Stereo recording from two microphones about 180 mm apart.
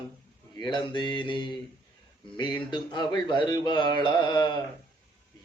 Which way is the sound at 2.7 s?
25° left (ahead or behind).